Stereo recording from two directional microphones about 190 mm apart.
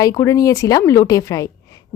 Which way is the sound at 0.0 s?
15° left (ahead or behind).